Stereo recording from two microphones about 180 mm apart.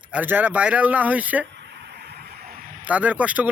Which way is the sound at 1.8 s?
70° right (ahead or behind).